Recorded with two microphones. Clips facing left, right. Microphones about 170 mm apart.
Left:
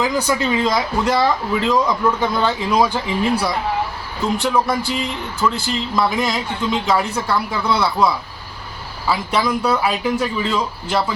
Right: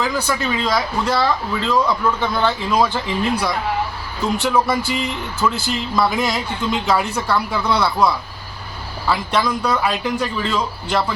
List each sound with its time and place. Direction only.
0.0 s speech: 20° left (ahead or behind)
4.2 s speech: centre (ahead or behind)